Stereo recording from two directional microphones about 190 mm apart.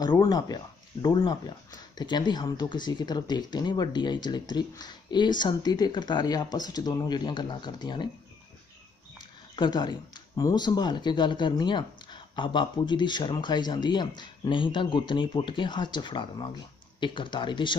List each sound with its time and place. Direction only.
0.0 s speech: 20° left (ahead or behind)
9.6 s speech: 25° left (ahead or behind)